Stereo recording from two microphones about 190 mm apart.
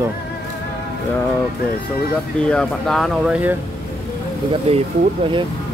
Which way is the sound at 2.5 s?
5° left (ahead or behind).